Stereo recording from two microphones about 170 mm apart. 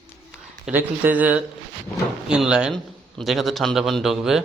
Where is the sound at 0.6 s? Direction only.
10° right (ahead or behind).